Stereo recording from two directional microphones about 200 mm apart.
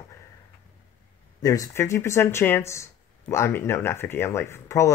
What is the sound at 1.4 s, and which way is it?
Speech, 15° left (ahead or behind).